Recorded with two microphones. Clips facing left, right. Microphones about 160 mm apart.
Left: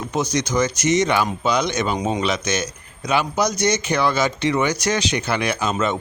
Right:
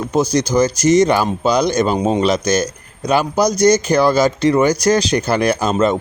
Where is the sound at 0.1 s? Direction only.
30° right (ahead or behind).